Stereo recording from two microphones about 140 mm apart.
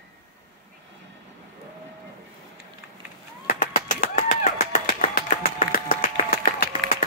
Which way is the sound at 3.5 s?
90° left.